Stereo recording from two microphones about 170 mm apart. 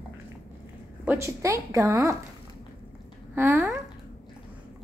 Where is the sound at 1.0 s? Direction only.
15° right (ahead or behind).